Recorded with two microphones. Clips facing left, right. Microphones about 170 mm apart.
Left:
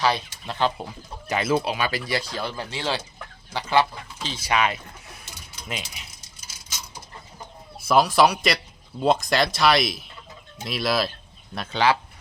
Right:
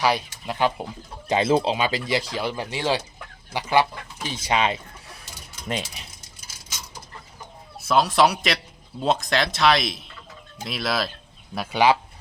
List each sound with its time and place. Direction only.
0.0 s speech: 15° right (ahead or behind)
1.3 s speech: 25° right (ahead or behind)
7.9 s speech: centre (ahead or behind)